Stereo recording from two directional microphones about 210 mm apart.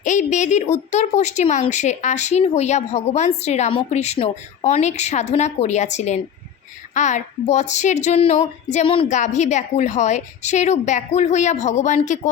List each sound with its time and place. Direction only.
0.0 s a woman's voice: 35° left (ahead or behind)